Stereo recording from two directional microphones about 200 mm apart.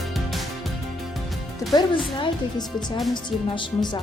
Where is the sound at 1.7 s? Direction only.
25° left (ahead or behind).